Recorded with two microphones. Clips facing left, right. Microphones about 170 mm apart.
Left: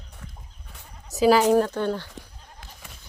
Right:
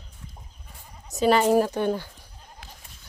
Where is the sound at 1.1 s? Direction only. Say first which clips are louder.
Left 2 dB; centre (ahead or behind).